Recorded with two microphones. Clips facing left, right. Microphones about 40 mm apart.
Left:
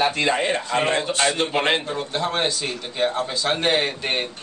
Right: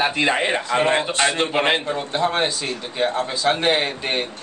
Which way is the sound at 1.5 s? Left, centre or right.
Centre.